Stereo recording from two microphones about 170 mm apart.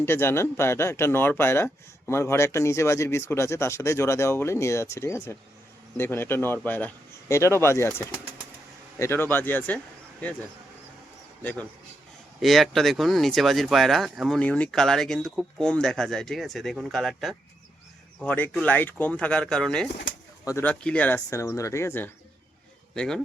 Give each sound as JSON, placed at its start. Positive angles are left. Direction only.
{"t": 0.0, "sound": "speech", "side_deg": 15}
{"t": 12.4, "sound": "speech", "side_deg": 0}